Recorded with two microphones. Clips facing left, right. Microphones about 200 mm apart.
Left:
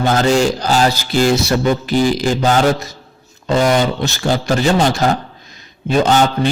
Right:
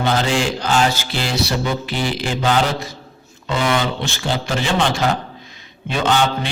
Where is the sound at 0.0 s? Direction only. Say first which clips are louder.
Left 5 dB; 45° left (ahead or behind).